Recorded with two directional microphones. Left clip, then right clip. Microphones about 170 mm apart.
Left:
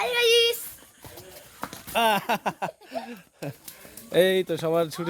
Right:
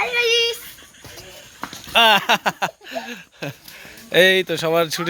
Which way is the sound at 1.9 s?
Centre (ahead or behind).